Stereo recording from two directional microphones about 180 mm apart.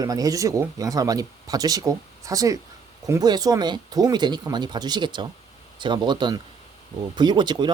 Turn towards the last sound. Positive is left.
turn(degrees=-25)  # may be behind; listen again after turning